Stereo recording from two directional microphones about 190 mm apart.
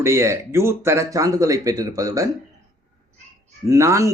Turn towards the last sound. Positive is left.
turn(degrees=-15)  # may be behind; listen again after turning